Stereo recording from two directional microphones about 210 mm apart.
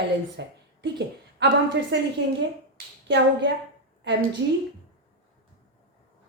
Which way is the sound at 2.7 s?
55° right (ahead or behind).